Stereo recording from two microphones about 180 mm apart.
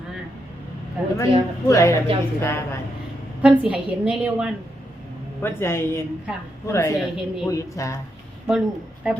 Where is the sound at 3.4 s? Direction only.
5° right (ahead or behind).